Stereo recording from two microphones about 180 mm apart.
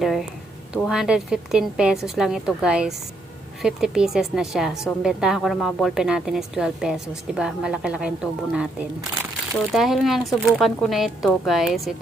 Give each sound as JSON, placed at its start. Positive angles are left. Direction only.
{"t": 0.0, "sound": "a woman's voice", "side_deg": 0}
{"t": 9.7, "sound": "a woman's voice", "side_deg": 0}